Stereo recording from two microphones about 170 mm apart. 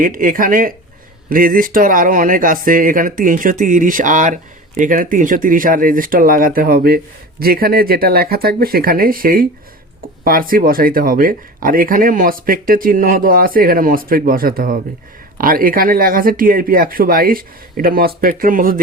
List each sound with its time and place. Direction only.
0.0 s speech: 55° right (ahead or behind)